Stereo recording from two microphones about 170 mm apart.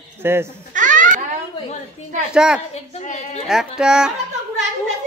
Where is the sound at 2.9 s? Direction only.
40° left (ahead or behind).